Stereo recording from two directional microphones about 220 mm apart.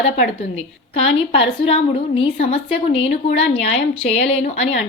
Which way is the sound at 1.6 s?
25° left (ahead or behind).